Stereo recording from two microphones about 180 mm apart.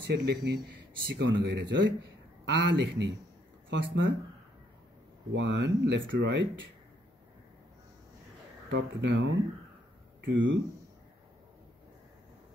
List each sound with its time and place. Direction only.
0.1 s speech: 60° right (ahead or behind)
3.7 s speech: 90° right
5.3 s speech: 90° right
8.6 s speech: 75° right (ahead or behind)